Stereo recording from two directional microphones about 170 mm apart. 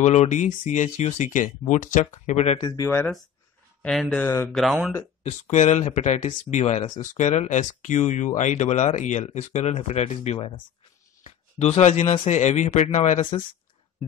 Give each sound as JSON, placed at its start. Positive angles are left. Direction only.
{"t": 0.0, "sound": "speech", "side_deg": 45}
{"t": 2.6, "sound": "speech", "side_deg": 20}
{"t": 3.8, "sound": "speech", "side_deg": 0}
{"t": 5.2, "sound": "speech", "side_deg": 45}